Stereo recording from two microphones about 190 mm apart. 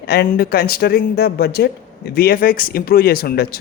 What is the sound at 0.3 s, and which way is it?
Speech, 55° left (ahead or behind).